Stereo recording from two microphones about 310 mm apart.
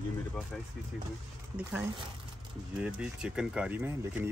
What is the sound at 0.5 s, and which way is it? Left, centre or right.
Speech, centre.